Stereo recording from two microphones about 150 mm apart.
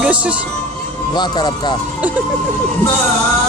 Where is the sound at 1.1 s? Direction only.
30° left (ahead or behind).